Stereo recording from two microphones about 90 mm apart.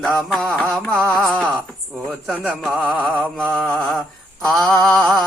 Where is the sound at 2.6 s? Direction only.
Centre (ahead or behind).